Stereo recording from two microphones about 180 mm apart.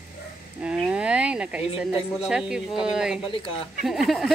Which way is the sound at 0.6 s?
5° right (ahead or behind).